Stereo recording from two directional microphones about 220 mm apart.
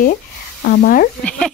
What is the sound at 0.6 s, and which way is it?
Speech, 40° left (ahead or behind).